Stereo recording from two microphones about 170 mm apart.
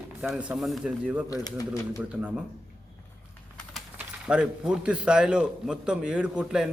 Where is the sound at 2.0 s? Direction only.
5° right (ahead or behind).